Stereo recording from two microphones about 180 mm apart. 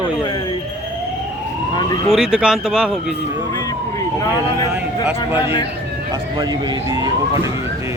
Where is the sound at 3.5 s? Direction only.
20° left (ahead or behind).